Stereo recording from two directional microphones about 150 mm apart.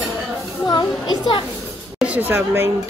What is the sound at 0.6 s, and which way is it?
Speech, 30° left (ahead or behind).